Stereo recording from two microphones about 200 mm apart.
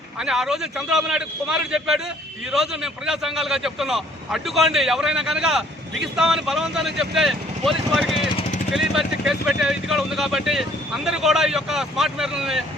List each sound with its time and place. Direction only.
0.2 s speech: 5° right (ahead or behind)